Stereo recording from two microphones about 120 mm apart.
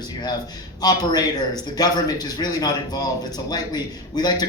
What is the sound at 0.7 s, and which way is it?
A man's voice, 35° left (ahead or behind).